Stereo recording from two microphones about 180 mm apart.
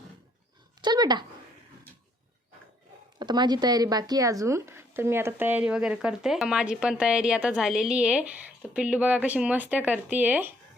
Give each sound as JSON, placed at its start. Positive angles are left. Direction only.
{"t": 0.8, "sound": "speech", "side_deg": -25}
{"t": 3.2, "sound": "speech", "side_deg": -25}